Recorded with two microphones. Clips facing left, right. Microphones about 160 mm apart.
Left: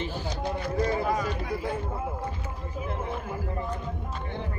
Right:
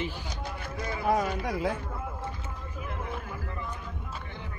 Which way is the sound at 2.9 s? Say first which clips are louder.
Left 4 dB; 30° left (ahead or behind).